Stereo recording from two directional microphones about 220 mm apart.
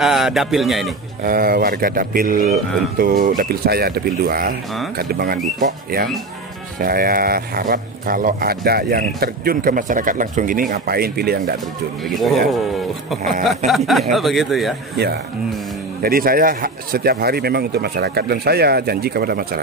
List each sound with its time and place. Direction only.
0.0 s speech: centre (ahead or behind)
1.2 s speech: 40° right (ahead or behind)
12.0 s speech: centre (ahead or behind)
13.7 s speech: centre (ahead or behind)
16.0 s speech: 40° right (ahead or behind)